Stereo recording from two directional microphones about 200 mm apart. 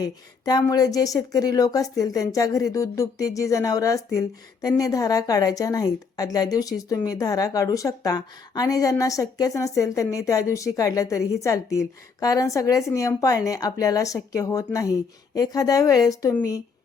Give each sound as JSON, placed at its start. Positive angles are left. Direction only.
{"t": 0.0, "sound": "a woman's voice", "side_deg": 20}